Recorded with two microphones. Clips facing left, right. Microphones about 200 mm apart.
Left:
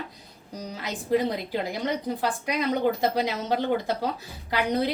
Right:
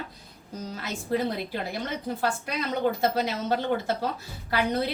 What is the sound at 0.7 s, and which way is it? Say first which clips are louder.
A woman's voice: left 4 dB; 15° left (ahead or behind).